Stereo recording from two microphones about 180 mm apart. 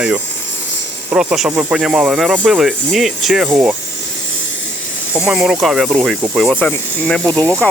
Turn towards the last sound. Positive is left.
turn(degrees=-15)  # may be behind; listen again after turning